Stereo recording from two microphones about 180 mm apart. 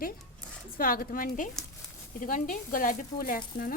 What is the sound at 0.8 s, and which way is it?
Speech, 50° left (ahead or behind).